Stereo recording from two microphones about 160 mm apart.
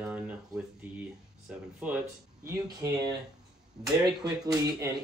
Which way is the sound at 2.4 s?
25° right (ahead or behind).